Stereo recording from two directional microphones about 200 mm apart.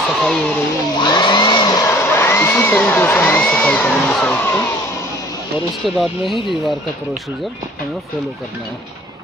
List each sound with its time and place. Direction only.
0.2 s speech: 5° left (ahead or behind)
1.0 s a sound: 20° left (ahead or behind); by 4.6 s 5° left (ahead or behind)
5.9 s speech: centre (ahead or behind)